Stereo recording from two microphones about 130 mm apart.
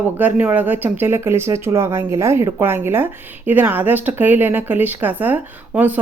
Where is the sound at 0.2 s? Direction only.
10° right (ahead or behind).